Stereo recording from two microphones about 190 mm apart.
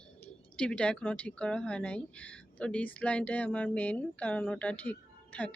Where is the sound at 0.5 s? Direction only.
5° left (ahead or behind).